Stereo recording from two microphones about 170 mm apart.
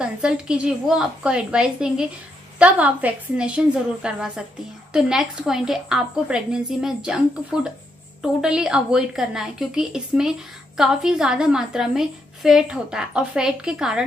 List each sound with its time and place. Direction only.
0.0 s a woman's voice: 5° right (ahead or behind)